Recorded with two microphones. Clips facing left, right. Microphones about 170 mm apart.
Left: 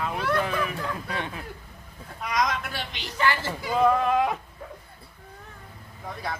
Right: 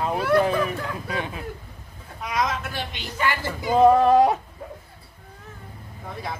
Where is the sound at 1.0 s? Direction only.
10° right (ahead or behind).